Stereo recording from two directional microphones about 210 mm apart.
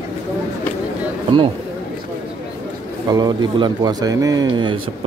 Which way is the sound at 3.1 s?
20° right (ahead or behind).